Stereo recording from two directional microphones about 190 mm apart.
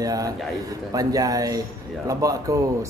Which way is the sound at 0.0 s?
20° right (ahead or behind).